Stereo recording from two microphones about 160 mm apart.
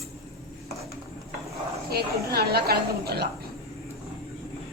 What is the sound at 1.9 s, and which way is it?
A woman's voice, 80° right.